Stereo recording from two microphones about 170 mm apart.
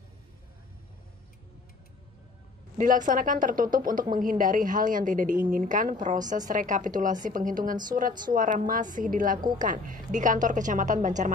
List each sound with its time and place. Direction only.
2.8 s a woman's voice: 50° right (ahead or behind)